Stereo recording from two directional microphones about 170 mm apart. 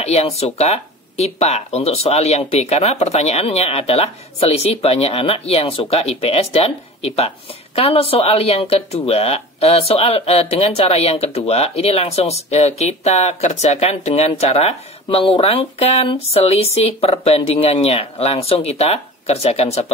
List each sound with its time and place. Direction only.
0.0 s speech: 40° left (ahead or behind)